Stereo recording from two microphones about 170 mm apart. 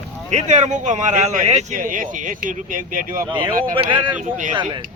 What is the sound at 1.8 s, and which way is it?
Speech, 50° right (ahead or behind).